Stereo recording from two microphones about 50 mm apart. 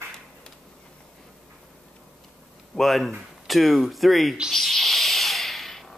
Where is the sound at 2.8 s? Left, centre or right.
Centre.